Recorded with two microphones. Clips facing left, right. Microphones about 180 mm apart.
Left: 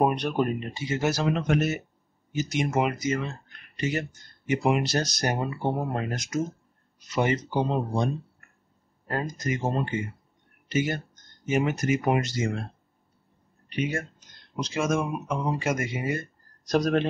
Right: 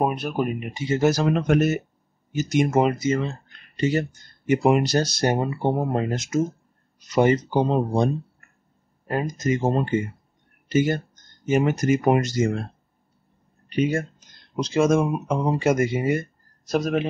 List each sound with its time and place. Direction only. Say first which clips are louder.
0.0 s speech: even; 5° right (ahead or behind)
0.8 s speech: right 6 dB; 40° right (ahead or behind)
4.5 s speech: right 5 dB; 45° right (ahead or behind); by 6.4 s 25° right (ahead or behind)
7.1 s speech: right 7 dB; 40° right (ahead or behind)
9.0 s speech: right 5 dB; 20° right (ahead or behind)
9.6 s speech: right 5 dB; 40° right (ahead or behind)
13.7 s speech: right 6 dB; 35° right (ahead or behind)
16.6 s speech: even; 5° right (ahead or behind)